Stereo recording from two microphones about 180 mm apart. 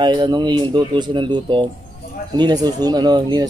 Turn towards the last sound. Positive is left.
turn(degrees=-25)  # may be behind; listen again after turning